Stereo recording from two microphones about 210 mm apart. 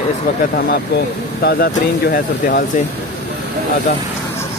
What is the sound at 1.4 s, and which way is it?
Speech, 45° left (ahead or behind).